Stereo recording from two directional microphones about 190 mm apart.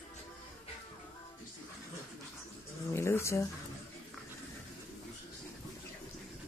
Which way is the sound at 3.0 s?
15° left (ahead or behind).